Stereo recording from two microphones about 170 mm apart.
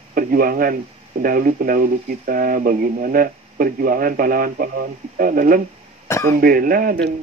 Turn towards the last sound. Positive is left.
turn(degrees=-55)  # may be behind; listen again after turning